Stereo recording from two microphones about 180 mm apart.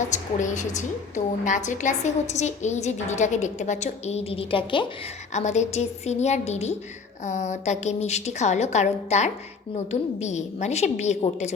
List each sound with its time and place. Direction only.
0.1 s a woman's voice: 45° left (ahead or behind)
5.3 s a woman's voice: 40° left (ahead or behind)